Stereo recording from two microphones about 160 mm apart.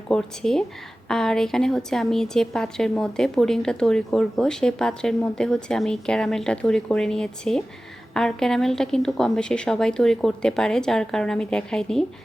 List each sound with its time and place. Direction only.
0.1 s a woman's voice: 5° left (ahead or behind)